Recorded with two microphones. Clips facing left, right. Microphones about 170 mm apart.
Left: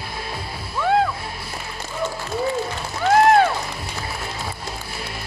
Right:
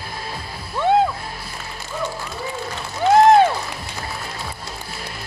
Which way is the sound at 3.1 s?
20° right (ahead or behind).